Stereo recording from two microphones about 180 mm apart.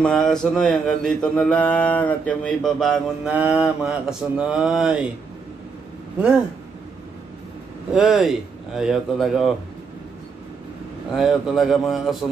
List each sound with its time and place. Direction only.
0.0 s mantra: 5° left (ahead or behind)
7.9 s mantra: centre (ahead or behind)
11.1 s mantra: centre (ahead or behind)